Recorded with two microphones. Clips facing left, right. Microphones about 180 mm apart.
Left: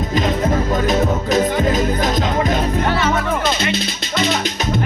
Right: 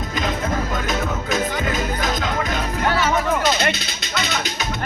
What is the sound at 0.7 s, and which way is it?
Music, 40° left (ahead or behind).